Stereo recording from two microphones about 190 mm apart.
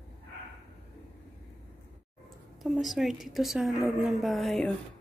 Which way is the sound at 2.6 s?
Centre (ahead or behind).